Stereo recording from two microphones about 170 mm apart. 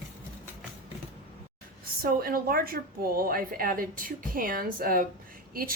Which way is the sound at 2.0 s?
60° right (ahead or behind).